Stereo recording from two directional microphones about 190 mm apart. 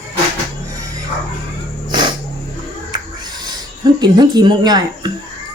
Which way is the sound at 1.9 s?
25° right (ahead or behind).